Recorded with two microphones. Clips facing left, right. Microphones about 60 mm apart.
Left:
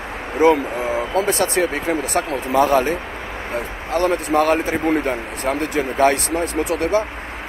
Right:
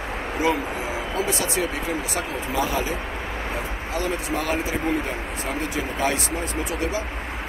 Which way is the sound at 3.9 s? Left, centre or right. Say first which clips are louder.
Left 9 dB; left.